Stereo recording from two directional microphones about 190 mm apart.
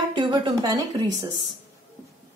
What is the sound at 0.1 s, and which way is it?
Speech, 25° right (ahead or behind).